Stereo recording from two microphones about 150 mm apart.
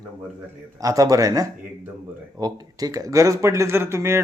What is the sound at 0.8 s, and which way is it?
A man's voice, 25° right (ahead or behind).